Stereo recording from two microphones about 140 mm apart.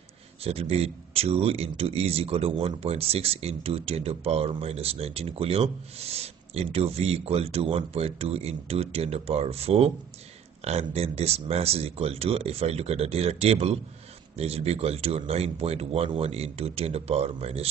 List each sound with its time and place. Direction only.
0.4 s speech: 45° right (ahead or behind)